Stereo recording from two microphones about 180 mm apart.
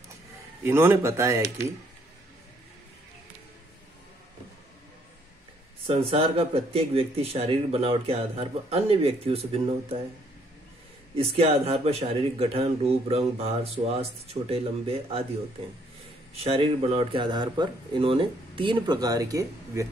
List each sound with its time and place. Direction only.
0.7 s a man's voice: 15° right (ahead or behind)
5.9 s speech: 30° right (ahead or behind)
11.1 s speech: 35° right (ahead or behind)
16.3 s speech: 30° right (ahead or behind); by 19.9 s 15° right (ahead or behind)